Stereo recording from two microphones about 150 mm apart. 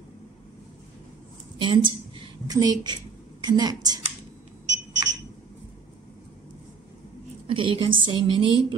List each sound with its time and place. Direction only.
1.6 s a woman's voice: 30° right (ahead or behind)
7.4 s a woman's voice: 35° right (ahead or behind)